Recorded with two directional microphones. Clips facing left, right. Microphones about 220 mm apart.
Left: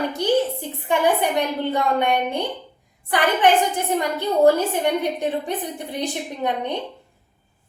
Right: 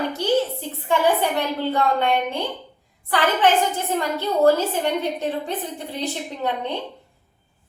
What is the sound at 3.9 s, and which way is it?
A woman's voice, 15° left (ahead or behind).